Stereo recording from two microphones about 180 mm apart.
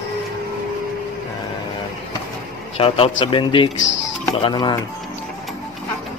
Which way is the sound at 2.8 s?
30° left (ahead or behind).